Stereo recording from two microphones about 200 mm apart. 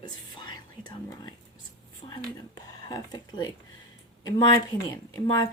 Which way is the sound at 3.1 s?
20° left (ahead or behind).